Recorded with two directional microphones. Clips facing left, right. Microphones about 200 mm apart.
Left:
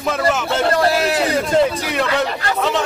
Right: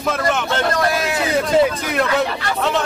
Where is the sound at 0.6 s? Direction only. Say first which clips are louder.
Left 5 dB; 30° left (ahead or behind).